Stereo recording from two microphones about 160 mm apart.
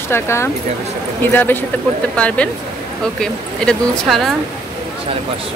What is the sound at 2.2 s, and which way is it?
Speech, 5° left (ahead or behind).